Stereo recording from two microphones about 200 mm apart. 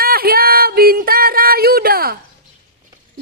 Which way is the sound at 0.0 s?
50° right (ahead or behind).